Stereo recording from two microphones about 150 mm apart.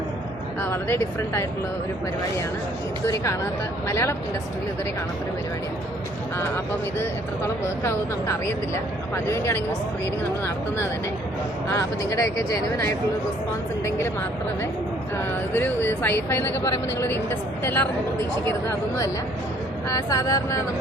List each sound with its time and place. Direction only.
0.6 s speech: 15° left (ahead or behind)
3.8 s speech: 20° left (ahead or behind)
7.0 s speech: 15° left (ahead or behind)
11.7 s speech: 20° left (ahead or behind)
15.5 s speech: 15° left (ahead or behind)
19.9 s speech: 20° left (ahead or behind)